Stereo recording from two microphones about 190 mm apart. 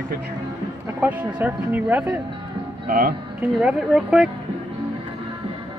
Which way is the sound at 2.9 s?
50° right (ahead or behind).